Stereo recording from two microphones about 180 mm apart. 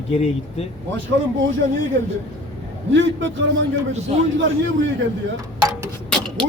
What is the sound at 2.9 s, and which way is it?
Speech, 90° right.